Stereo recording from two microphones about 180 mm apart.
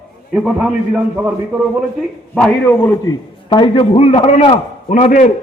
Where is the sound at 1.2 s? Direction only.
10° right (ahead or behind).